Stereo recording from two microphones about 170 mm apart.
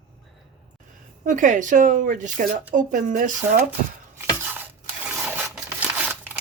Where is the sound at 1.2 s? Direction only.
50° right (ahead or behind).